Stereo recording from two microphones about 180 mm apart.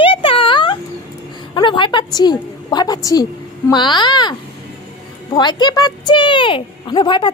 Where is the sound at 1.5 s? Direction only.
25° left (ahead or behind).